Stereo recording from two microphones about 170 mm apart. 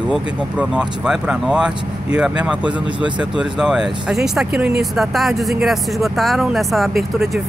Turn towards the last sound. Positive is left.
turn(degrees=0)  # may be behind; listen again after turning